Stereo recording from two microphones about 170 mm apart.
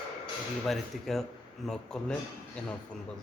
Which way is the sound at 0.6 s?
Centre (ahead or behind).